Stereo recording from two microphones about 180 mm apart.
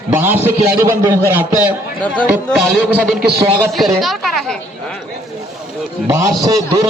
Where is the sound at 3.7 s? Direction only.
Centre (ahead or behind).